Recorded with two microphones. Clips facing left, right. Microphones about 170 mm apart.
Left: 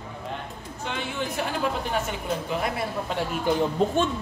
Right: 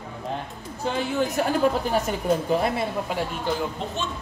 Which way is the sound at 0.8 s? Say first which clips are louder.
Right 6 dB; 40° right (ahead or behind).